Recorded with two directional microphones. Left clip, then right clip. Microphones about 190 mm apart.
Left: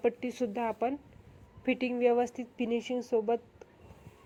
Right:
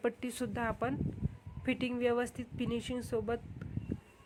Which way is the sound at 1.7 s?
55° right (ahead or behind).